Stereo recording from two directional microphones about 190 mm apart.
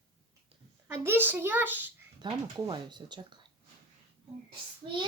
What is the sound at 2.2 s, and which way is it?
Speech, 25° right (ahead or behind).